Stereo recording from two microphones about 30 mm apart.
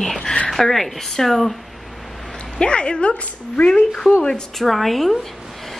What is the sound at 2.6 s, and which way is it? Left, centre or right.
Speech, left.